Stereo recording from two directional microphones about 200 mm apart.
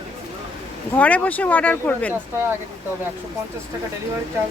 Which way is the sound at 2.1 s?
10° right (ahead or behind).